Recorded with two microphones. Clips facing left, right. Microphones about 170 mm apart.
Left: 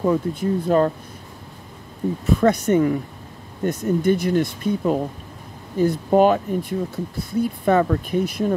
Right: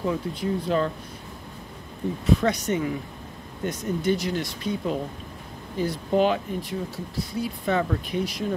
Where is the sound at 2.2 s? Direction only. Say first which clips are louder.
Left 5 dB; 50° left (ahead or behind).